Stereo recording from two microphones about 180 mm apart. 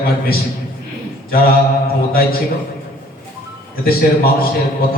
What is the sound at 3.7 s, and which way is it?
Speech, 55° left (ahead or behind).